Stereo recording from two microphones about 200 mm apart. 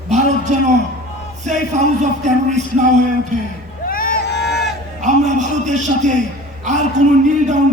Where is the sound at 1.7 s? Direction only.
35° right (ahead or behind).